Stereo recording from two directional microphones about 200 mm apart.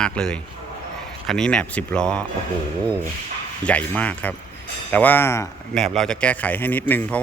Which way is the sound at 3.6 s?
5° left (ahead or behind).